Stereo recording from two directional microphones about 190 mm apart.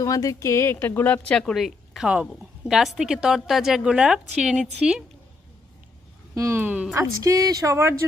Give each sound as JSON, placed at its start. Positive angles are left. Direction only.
{"t": 0.0, "sound": "a woman's voice", "side_deg": 20}
{"t": 6.3, "sound": "speech", "side_deg": -15}